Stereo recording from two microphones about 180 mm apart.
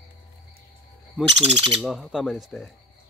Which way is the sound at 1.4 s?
30° right (ahead or behind).